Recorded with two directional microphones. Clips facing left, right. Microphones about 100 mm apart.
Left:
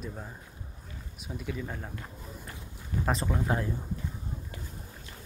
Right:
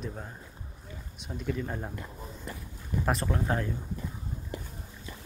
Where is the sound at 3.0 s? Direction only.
Centre (ahead or behind).